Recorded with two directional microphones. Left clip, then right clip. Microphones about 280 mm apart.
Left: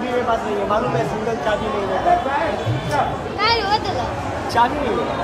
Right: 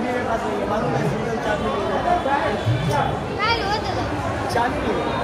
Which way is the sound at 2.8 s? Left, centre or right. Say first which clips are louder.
Left 2 dB; left.